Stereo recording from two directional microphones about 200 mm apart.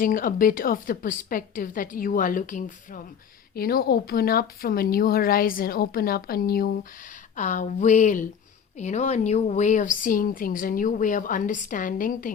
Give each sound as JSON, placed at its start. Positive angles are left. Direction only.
{"t": 0.0, "sound": "a woman's voice", "side_deg": 45}